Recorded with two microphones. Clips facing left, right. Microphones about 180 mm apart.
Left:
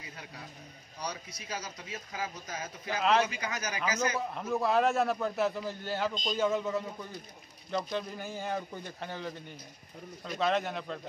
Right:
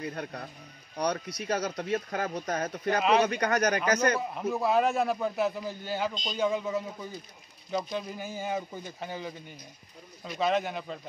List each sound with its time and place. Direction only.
0.0 s speech: 60° right (ahead or behind)
4.2 s a man's voice: 5° right (ahead or behind)